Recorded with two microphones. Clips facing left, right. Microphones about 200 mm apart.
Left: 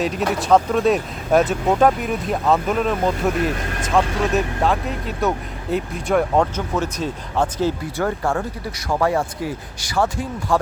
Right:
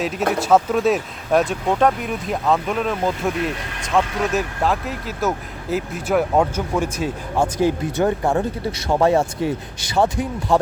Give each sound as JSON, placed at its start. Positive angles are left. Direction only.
{"t": 0.0, "sound": "speech", "side_deg": 0}